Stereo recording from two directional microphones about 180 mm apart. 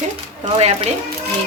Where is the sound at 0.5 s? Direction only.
30° right (ahead or behind).